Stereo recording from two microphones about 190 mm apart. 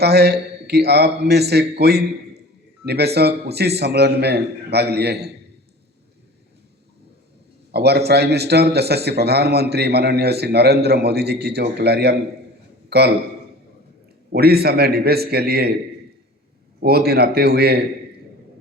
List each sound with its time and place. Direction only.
0.0 s a man's voice: 60° right (ahead or behind)
7.7 s a man's voice: 60° right (ahead or behind)
14.3 s a man's voice: 55° right (ahead or behind)
16.8 s a man's voice: 55° right (ahead or behind)